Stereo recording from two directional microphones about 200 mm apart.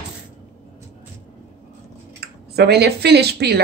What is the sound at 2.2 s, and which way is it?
Speech, 55° right (ahead or behind).